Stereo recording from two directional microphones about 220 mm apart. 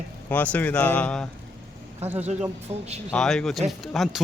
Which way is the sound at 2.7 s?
25° right (ahead or behind).